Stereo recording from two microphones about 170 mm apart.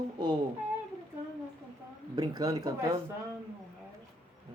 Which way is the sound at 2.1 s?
20° right (ahead or behind).